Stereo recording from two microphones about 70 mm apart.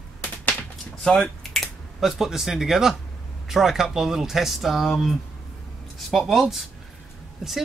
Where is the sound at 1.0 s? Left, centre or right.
Centre.